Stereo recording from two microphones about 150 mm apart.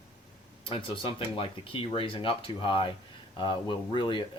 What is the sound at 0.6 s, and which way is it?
Speech, 35° left (ahead or behind).